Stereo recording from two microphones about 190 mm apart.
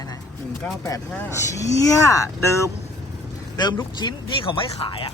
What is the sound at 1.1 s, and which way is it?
A man's voice, 15° left (ahead or behind).